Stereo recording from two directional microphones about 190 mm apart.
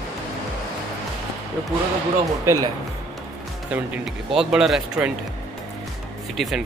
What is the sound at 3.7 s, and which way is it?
Speech, 5° right (ahead or behind).